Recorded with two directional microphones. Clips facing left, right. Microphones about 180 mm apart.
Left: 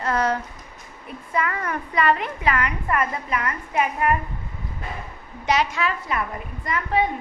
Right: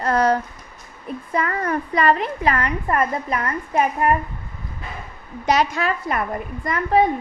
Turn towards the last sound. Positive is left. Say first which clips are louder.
# right 5 dB
turn(degrees=-45)  # may be behind; listen again after turning